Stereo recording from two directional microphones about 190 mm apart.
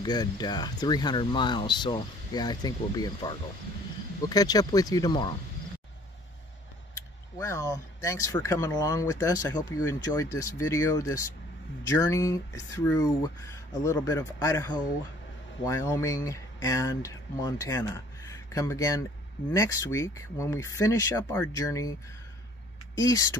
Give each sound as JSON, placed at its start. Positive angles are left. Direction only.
{"t": 0.0, "sound": "speech", "side_deg": 20}
{"t": 7.3, "sound": "speech", "side_deg": 15}
{"t": 22.9, "sound": "speech", "side_deg": 20}